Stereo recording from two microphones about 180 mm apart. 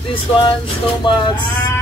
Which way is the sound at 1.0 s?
25° left (ahead or behind).